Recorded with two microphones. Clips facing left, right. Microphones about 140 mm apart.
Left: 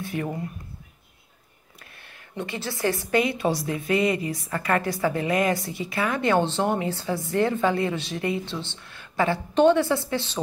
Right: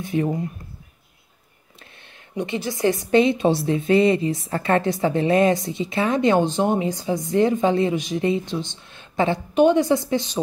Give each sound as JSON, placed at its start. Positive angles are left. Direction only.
{"t": 0.0, "sound": "a woman's voice", "side_deg": -20}
{"t": 1.8, "sound": "a woman's voice", "side_deg": -20}